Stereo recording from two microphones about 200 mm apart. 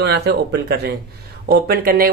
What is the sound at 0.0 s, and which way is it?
Speech, 60° right (ahead or behind).